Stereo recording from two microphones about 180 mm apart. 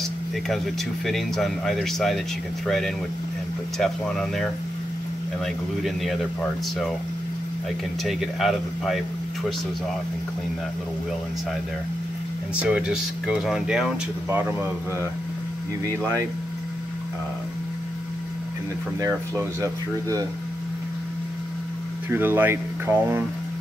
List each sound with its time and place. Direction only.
1.0 s speech: centre (ahead or behind)
8.0 s speech: centre (ahead or behind)
12.5 s speech: 5° right (ahead or behind)
18.9 s speech: 15° right (ahead or behind)
22.1 s speech: 10° right (ahead or behind)